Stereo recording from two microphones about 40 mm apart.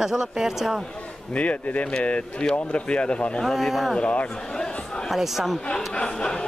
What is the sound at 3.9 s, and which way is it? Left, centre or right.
Speech, left.